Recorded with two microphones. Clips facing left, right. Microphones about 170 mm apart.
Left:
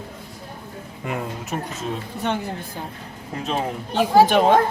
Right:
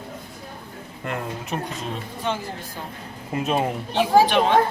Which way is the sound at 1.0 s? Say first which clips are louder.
Left 1 dB; 5° left (ahead or behind).